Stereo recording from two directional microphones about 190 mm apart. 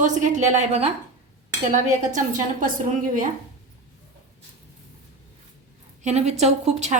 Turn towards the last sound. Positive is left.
turn(degrees=-35)  # may be behind; listen again after turning